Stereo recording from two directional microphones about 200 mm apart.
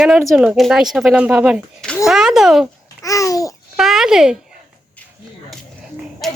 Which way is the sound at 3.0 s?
15° left (ahead or behind).